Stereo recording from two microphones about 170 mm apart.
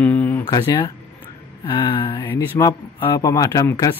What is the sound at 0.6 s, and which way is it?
Speech, 30° left (ahead or behind).